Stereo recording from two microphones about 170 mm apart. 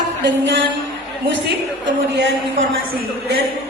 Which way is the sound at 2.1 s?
90° right.